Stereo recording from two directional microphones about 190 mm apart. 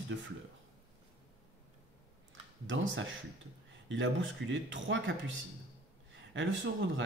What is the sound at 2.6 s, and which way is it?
A man's voice, 80° right.